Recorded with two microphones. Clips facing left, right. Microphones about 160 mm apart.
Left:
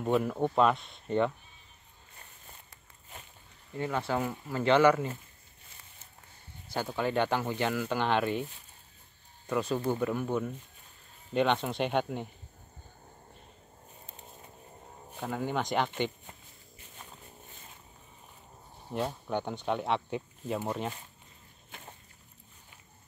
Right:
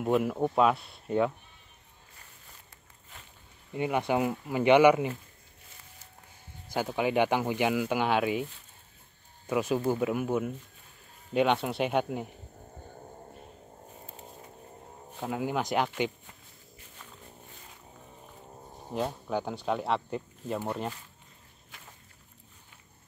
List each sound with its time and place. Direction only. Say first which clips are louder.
0.0 s speech: right 1 dB; 5° right (ahead or behind)
3.7 s speech: right 4 dB; 15° right (ahead or behind)
6.7 s speech: right 3 dB; 10° right (ahead or behind)
9.5 s speech: right 2 dB; 10° right (ahead or behind)
15.1 s speech: right 2 dB; 5° right (ahead or behind)
18.9 s speech: right 1 dB; centre (ahead or behind)